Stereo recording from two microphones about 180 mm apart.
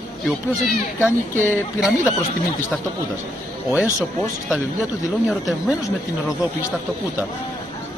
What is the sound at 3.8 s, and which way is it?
Speech, 15° left (ahead or behind).